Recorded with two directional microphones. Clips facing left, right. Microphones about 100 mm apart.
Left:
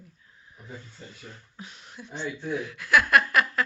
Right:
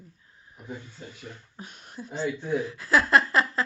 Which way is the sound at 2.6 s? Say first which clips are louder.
Left 2 dB; 35° right (ahead or behind).